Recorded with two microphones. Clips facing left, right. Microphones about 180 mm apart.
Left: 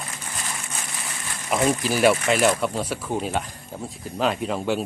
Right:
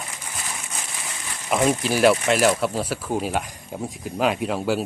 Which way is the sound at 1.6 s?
Centre (ahead or behind).